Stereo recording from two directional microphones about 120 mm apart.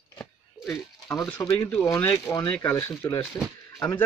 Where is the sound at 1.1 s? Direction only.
25° left (ahead or behind).